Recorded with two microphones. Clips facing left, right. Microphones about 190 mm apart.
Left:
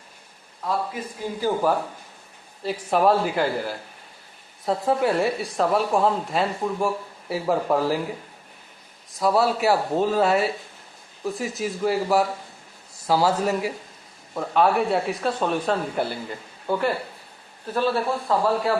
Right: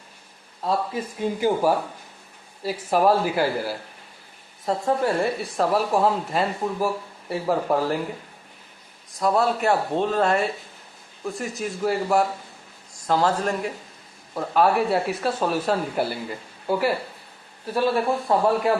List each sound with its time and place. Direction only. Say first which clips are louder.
1.4 s speech: right 1 dB; 15° right (ahead or behind)
2.6 s speech: even; centre (ahead or behind)
9.1 s speech: left 1 dB; 5° left (ahead or behind); by 18.7 s 15° right (ahead or behind)